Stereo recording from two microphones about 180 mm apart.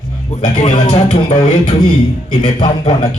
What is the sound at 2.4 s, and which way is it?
Speech, 25° left (ahead or behind).